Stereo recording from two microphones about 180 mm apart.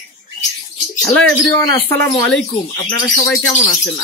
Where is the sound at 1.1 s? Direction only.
15° left (ahead or behind).